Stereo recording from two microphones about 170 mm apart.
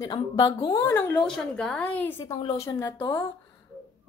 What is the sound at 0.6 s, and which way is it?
A woman's voice, 25° left (ahead or behind).